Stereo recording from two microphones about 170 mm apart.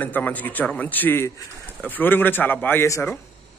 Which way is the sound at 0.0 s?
10° left (ahead or behind).